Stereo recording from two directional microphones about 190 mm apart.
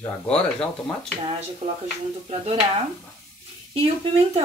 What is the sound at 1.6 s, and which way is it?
Speech, 35° right (ahead or behind).